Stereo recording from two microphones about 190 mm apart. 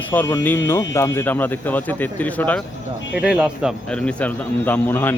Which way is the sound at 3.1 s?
5° right (ahead or behind).